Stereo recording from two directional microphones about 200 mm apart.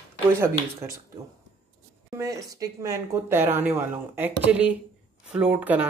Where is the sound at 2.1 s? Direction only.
15° right (ahead or behind).